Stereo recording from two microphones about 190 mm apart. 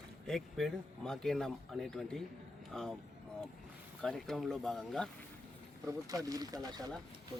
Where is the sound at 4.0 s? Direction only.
Centre (ahead or behind).